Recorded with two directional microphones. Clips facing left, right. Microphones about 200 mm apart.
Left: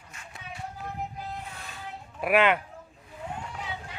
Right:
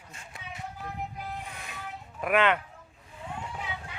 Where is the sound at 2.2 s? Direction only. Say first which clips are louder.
Left 2 dB; 10° left (ahead or behind).